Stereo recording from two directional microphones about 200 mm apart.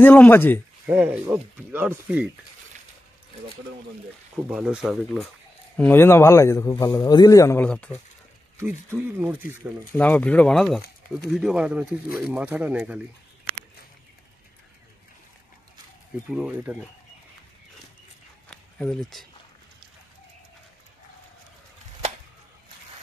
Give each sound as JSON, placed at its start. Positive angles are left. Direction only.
{"t": 0.0, "sound": "speech", "side_deg": 10}
{"t": 0.8, "sound": "speech", "side_deg": -5}
{"t": 4.5, "sound": "speech", "side_deg": -5}
{"t": 5.8, "sound": "speech", "side_deg": 10}
{"t": 8.5, "sound": "speech", "side_deg": -10}
{"t": 9.9, "sound": "speech", "side_deg": 5}
{"t": 16.3, "sound": "speech", "side_deg": -5}
{"t": 18.5, "sound": "a sound", "side_deg": 5}